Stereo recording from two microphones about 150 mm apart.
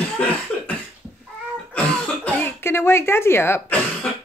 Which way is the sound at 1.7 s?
10° left (ahead or behind).